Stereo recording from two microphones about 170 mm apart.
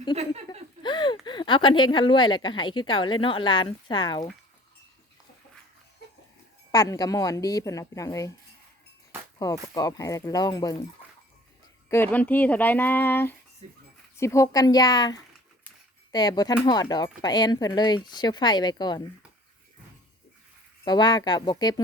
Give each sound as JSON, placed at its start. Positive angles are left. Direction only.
{"t": 0.8, "sound": "speech", "side_deg": 25}
{"t": 6.7, "sound": "speech", "side_deg": 20}
{"t": 9.4, "sound": "speech", "side_deg": 20}
{"t": 11.9, "sound": "speech", "side_deg": 10}
{"t": 13.6, "sound": "speech", "side_deg": -40}
{"t": 14.2, "sound": "speech", "side_deg": 15}
{"t": 20.8, "sound": "speech", "side_deg": 25}